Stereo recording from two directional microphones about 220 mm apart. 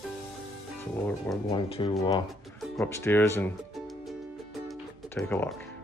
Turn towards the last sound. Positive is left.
turn(degrees=10)  # may be behind; listen again after turning